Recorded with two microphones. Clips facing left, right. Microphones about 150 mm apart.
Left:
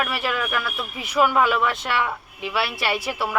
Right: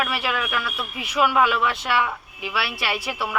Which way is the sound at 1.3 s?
40° left (ahead or behind).